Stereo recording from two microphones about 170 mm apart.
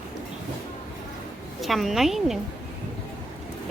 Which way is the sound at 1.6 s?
Centre (ahead or behind).